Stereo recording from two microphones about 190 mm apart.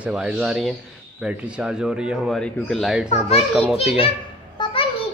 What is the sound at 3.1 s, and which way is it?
Speech, 35° left (ahead or behind).